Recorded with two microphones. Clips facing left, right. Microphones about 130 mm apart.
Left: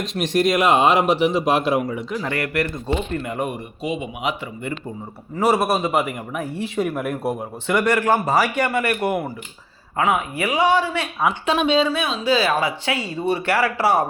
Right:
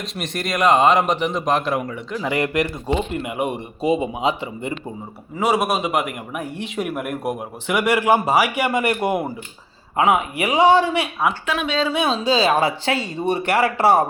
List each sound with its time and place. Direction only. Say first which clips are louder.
0.0 s a man's voice: left 8 dB; centre (ahead or behind)
2.2 s a man's voice: right 5 dB; 20° right (ahead or behind)
3.8 s speech: right 8 dB; 35° right (ahead or behind)
5.4 s a man's voice: left 1 dB; 5° left (ahead or behind); by 10.9 s 25° right (ahead or behind)
11.4 s speech: left 5 dB; 25° left (ahead or behind)
12.2 s speech: even; 20° right (ahead or behind)